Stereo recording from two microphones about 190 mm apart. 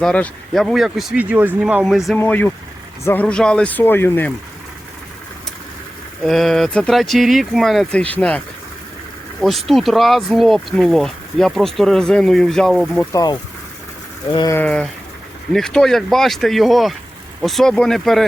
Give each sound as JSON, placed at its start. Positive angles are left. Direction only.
{"t": 0.0, "sound": "speech", "side_deg": 5}
{"t": 2.1, "sound": "speech", "side_deg": 10}
{"t": 6.2, "sound": "speech", "side_deg": 0}
{"t": 9.4, "sound": "speech", "side_deg": 0}
{"t": 13.0, "sound": "speech", "side_deg": 20}